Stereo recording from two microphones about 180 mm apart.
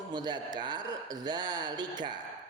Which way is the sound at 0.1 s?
25° right (ahead or behind).